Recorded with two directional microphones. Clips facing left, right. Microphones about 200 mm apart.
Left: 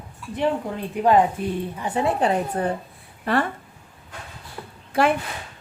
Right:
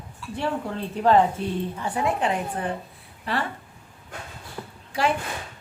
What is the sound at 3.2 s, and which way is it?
Speech, 50° left (ahead or behind).